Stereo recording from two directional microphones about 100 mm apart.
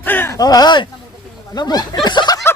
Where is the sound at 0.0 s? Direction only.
20° left (ahead or behind).